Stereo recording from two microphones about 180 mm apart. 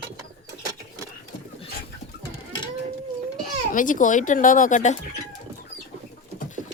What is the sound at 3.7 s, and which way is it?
Speech, 45° left (ahead or behind).